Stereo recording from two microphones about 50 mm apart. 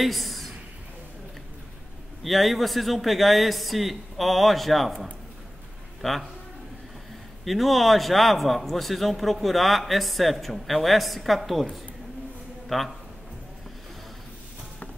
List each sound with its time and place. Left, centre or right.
0.0 s a woman's voice: centre
2.2 s a man's voice: centre
7.4 s a man's voice: centre
12.6 s a man's voice: centre